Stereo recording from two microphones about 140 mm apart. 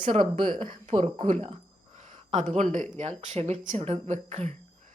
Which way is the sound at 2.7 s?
60° right (ahead or behind).